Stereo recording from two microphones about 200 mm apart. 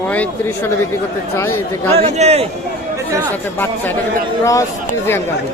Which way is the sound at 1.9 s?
30° right (ahead or behind).